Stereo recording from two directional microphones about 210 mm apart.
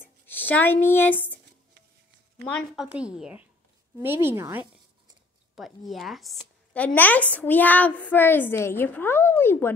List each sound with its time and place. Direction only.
0.3 s speech: 10° left (ahead or behind)
2.4 s a woman's voice: 5° left (ahead or behind)
5.6 s a woman's voice: centre (ahead or behind)